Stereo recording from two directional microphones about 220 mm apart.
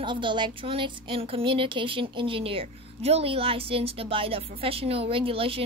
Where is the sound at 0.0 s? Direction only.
20° right (ahead or behind).